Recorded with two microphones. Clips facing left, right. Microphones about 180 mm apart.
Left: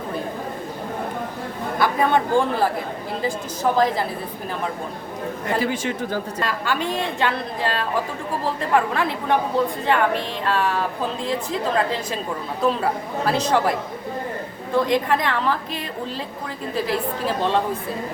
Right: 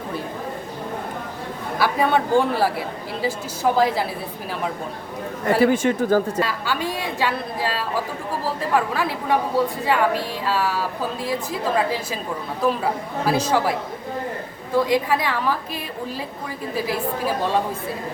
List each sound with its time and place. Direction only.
1.8 s a woman's voice: 5° right (ahead or behind)
5.6 s speech: 50° right (ahead or behind)
6.4 s a woman's voice: 5° right (ahead or behind)
14.8 s a woman's voice: 10° right (ahead or behind)